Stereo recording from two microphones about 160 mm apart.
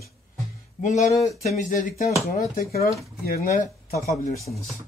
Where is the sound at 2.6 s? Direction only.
70° left (ahead or behind).